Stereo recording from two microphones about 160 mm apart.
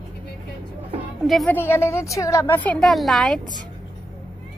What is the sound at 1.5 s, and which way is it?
A woman's voice, 15° left (ahead or behind).